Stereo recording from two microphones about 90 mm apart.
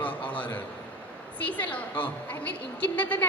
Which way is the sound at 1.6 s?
15° left (ahead or behind).